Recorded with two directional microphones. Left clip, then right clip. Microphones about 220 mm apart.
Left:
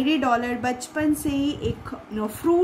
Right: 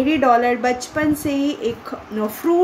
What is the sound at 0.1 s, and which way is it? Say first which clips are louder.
A woman's voice: right 8 dB; 30° left (ahead or behind).